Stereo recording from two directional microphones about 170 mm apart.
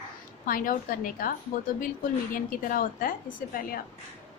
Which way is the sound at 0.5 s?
55° left (ahead or behind).